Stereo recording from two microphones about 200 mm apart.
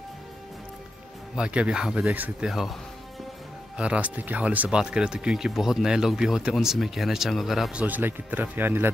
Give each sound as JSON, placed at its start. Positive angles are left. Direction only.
{"t": 1.3, "sound": "speech", "side_deg": -5}